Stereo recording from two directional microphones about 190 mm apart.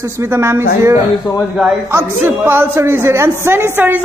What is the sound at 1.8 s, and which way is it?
Speech, 15° right (ahead or behind).